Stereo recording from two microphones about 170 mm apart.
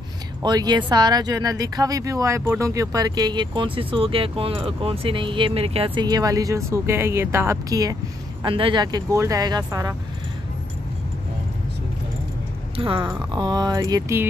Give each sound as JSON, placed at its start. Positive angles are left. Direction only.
{"t": 0.4, "sound": "speech", "side_deg": -25}
{"t": 12.7, "sound": "speech", "side_deg": -30}